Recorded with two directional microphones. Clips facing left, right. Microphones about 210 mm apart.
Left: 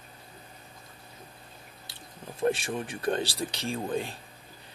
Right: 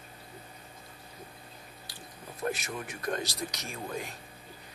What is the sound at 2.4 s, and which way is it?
Speech, 30° left (ahead or behind).